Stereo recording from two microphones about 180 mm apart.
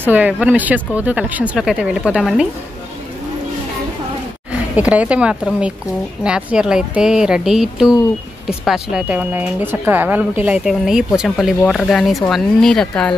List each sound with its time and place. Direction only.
0.0 s speech: 10° right (ahead or behind)
4.5 s speech: 10° right (ahead or behind)